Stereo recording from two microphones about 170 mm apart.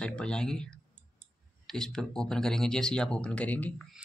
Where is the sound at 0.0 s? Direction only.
5° left (ahead or behind).